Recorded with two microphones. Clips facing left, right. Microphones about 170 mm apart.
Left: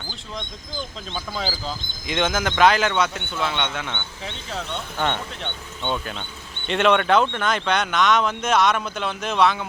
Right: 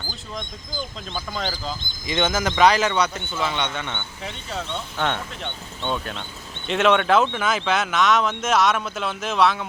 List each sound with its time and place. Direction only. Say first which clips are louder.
1.1 s speech: even; 5° left (ahead or behind)